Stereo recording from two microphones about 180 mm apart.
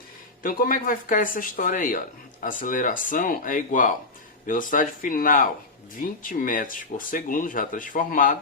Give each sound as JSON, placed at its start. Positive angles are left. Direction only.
{"t": 0.4, "sound": "speech", "side_deg": 50}